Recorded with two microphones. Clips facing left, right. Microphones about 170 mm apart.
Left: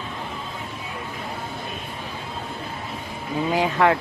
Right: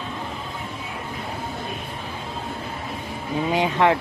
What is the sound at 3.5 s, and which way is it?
Speech, 20° right (ahead or behind).